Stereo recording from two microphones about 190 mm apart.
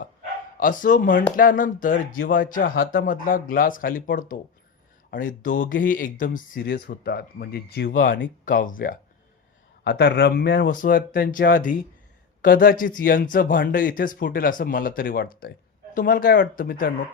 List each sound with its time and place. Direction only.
0.5 s speech: 45° left (ahead or behind)
9.8 s speech: 60° left (ahead or behind)
10.7 s speech: 45° left (ahead or behind)